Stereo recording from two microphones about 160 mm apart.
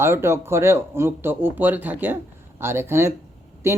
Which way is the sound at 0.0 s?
15° right (ahead or behind).